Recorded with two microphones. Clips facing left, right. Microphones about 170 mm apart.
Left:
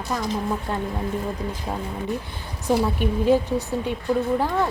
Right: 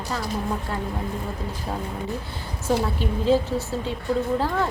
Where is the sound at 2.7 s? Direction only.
15° left (ahead or behind).